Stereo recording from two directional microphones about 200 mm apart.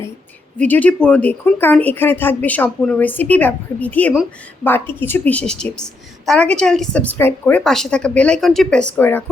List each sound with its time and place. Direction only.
0.6 s a woman's voice: 5° left (ahead or behind)